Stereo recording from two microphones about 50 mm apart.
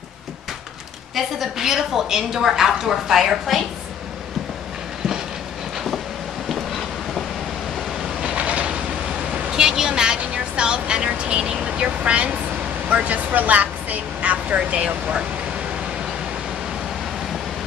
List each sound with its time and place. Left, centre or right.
1.1 s a woman's voice: centre
8.2 s train: right
9.3 s a woman's voice: centre